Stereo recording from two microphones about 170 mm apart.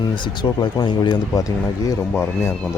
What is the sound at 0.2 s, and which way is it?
Speech, 25° left (ahead or behind).